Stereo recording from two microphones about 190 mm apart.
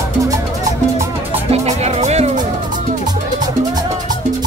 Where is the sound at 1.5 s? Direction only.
35° right (ahead or behind).